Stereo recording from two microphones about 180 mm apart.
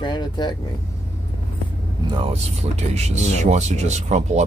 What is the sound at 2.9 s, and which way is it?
Speech, 40° right (ahead or behind).